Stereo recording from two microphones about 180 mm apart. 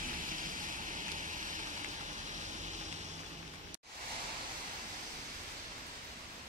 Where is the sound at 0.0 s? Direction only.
45° right (ahead or behind).